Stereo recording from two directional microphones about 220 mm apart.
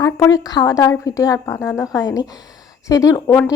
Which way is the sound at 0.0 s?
15° left (ahead or behind).